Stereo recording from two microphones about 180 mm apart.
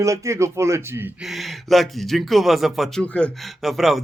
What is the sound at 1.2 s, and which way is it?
Speech, centre (ahead or behind).